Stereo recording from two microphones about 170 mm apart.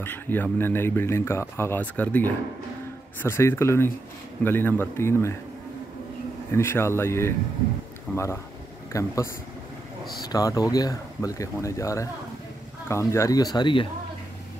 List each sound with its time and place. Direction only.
0.0 s speech: 10° left (ahead or behind)
6.5 s speech: 15° left (ahead or behind)